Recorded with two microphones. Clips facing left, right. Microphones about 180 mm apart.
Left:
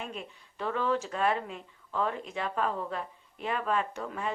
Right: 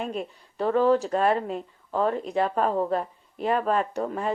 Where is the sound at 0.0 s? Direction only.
40° right (ahead or behind).